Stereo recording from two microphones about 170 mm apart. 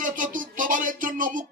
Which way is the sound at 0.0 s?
50° right (ahead or behind).